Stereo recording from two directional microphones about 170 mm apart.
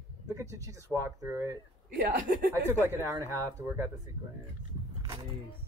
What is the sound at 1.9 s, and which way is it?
Speech, 55° right (ahead or behind).